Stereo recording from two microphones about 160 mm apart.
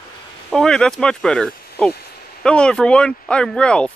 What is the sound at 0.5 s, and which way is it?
A man's voice, 5° left (ahead or behind).